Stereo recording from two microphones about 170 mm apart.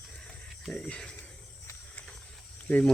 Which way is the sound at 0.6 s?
5° left (ahead or behind).